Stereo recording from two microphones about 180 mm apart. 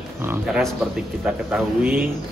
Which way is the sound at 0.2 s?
10° right (ahead or behind).